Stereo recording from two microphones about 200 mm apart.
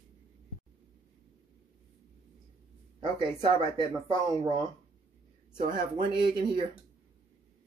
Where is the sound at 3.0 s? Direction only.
25° right (ahead or behind).